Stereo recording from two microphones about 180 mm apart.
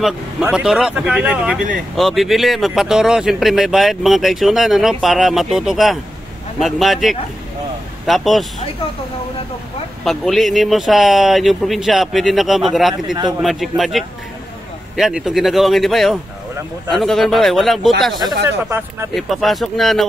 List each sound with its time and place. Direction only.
0.0 s speech: 5° right (ahead or behind)
10.0 s speech: centre (ahead or behind)
12.9 s a man's voice: 25° right (ahead or behind)
13.4 s speech: centre (ahead or behind)
18.2 s a man's voice: 20° right (ahead or behind)
19.1 s speech: centre (ahead or behind)